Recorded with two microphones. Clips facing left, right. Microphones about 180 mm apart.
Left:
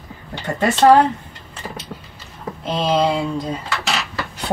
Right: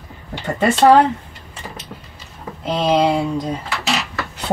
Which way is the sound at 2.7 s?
5° right (ahead or behind).